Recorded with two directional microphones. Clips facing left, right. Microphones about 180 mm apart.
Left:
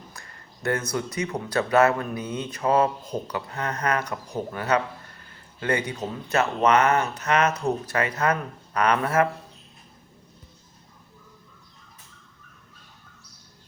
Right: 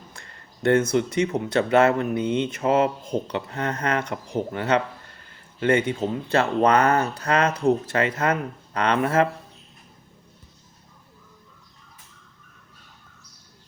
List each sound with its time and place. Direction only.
0.1 s speech: 30° right (ahead or behind)